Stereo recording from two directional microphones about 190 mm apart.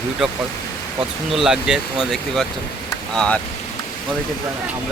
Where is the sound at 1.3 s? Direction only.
Centre (ahead or behind).